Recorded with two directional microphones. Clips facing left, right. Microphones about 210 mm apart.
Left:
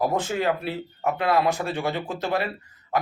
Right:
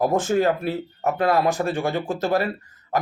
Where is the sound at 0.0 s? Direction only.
45° right (ahead or behind).